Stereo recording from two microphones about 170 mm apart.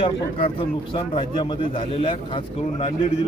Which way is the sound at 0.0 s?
30° left (ahead or behind).